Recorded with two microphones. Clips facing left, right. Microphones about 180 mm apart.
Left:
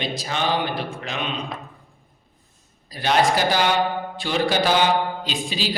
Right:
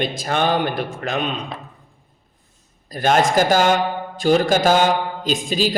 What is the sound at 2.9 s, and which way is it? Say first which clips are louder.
A man's voice: right 3 dB; 50° right (ahead or behind).